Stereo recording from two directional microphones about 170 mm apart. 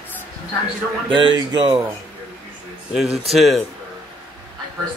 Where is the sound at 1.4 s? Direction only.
20° right (ahead or behind).